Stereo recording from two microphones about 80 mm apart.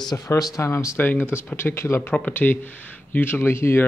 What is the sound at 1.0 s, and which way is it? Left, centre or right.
Speech, left.